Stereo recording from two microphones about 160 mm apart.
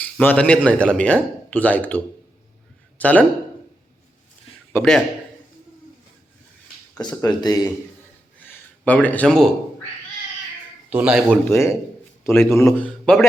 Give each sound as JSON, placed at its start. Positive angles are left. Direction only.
{"t": 0.0, "sound": "speech", "side_deg": 10}
{"t": 3.0, "sound": "speech", "side_deg": 10}
{"t": 4.8, "sound": "speech", "side_deg": 5}
{"t": 7.0, "sound": "speech", "side_deg": 25}
{"t": 8.4, "sound": "speech", "side_deg": 10}
{"t": 10.8, "sound": "speech", "side_deg": -10}
{"t": 11.4, "sound": "speech", "side_deg": 15}